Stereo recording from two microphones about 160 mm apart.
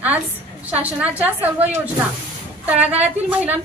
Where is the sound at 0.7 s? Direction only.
10° right (ahead or behind).